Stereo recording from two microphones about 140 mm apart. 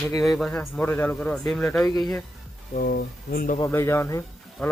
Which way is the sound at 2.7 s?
90° left.